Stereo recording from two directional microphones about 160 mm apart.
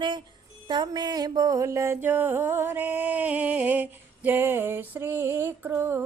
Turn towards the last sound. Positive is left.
turn(degrees=-15)  # may be behind; listen again after turning